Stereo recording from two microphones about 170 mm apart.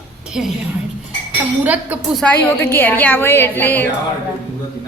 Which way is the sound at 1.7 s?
10° right (ahead or behind).